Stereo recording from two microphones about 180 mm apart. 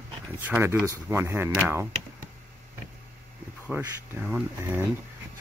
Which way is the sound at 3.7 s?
10° right (ahead or behind).